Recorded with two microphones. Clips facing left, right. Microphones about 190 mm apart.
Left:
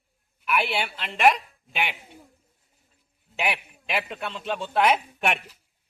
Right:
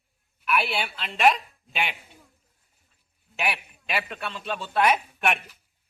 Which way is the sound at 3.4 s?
20° left (ahead or behind).